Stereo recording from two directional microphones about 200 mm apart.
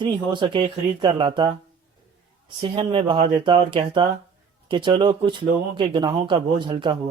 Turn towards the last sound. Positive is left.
turn(degrees=-25)  # may be behind; listen again after turning